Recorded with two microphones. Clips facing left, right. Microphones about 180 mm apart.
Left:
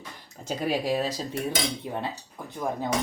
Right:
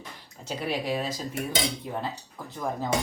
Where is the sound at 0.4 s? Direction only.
40° left (ahead or behind).